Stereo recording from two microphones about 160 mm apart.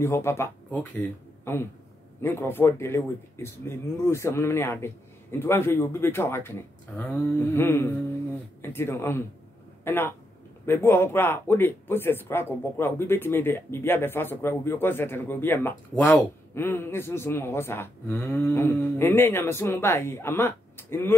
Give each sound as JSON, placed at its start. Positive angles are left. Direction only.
{"t": 0.0, "sound": "speech", "side_deg": 15}